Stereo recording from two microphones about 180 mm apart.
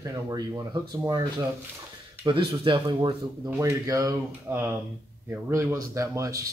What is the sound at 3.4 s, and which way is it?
Speech, 15° right (ahead or behind).